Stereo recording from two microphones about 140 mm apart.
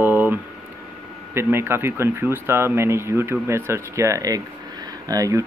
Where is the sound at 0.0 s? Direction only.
15° right (ahead or behind).